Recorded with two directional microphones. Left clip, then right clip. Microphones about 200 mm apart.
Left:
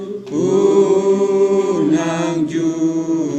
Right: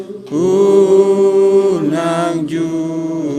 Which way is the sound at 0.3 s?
50° right (ahead or behind).